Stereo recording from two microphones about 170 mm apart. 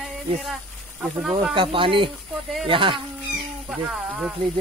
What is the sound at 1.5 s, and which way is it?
Speech, 30° right (ahead or behind).